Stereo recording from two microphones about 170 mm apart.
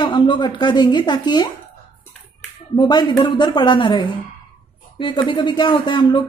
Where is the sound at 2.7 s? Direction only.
25° left (ahead or behind).